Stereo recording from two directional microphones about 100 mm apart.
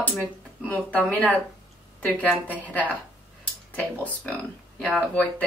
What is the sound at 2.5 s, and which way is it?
A woman's voice, 15° left (ahead or behind).